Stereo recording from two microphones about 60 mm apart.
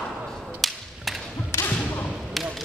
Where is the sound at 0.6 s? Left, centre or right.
Centre.